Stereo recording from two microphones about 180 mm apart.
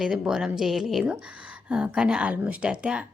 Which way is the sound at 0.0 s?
5° right (ahead or behind).